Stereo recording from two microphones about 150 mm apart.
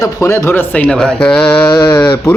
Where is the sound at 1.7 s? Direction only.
30° left (ahead or behind).